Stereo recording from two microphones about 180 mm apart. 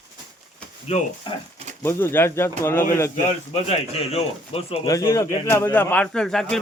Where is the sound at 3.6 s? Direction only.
35° left (ahead or behind).